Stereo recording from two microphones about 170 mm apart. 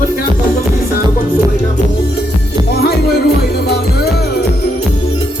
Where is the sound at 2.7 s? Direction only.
70° left (ahead or behind).